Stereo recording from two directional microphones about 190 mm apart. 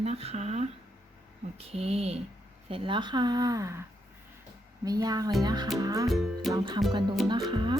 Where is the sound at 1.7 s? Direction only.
30° right (ahead or behind).